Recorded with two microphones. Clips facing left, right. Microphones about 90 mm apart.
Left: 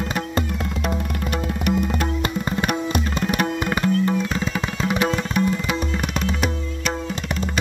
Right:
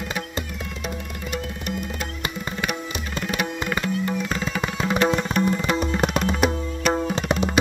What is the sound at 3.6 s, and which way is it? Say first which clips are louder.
Music: left 4 dB; 25° left (ahead or behind).